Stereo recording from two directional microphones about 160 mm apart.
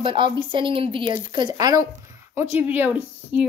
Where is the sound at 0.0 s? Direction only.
30° right (ahead or behind).